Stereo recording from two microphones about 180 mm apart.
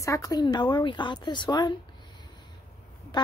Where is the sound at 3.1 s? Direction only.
25° left (ahead or behind).